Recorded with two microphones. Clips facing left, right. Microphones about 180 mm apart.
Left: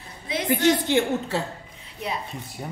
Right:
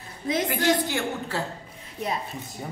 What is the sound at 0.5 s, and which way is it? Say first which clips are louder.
Speech: left 7 dB; 25° left (ahead or behind).